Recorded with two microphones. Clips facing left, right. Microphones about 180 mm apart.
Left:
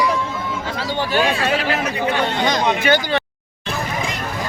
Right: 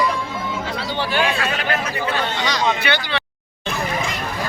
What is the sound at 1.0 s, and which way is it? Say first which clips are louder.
Speech: left 2 dB; 40° left (ahead or behind).